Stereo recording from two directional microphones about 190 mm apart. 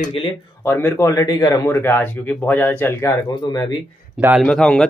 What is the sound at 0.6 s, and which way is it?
A man's voice, 15° left (ahead or behind).